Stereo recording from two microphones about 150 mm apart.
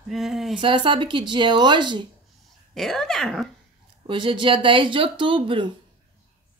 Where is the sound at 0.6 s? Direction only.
35° right (ahead or behind).